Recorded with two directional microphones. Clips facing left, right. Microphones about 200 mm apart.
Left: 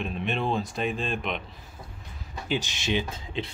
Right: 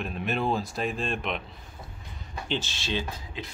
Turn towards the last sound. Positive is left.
turn(degrees=25)  # may be behind; listen again after turning